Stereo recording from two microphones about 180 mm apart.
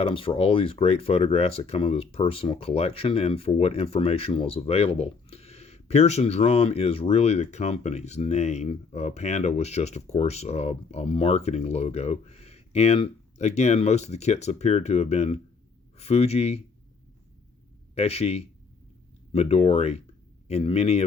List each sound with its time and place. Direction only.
0.0 s speech: 30° left (ahead or behind)
17.9 s speech: 35° left (ahead or behind)